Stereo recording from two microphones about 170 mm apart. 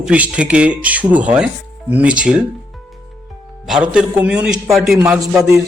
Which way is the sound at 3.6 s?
5° right (ahead or behind).